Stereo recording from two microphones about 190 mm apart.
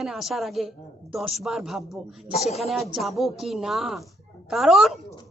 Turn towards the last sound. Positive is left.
turn(degrees=0)  # may be behind; listen again after turning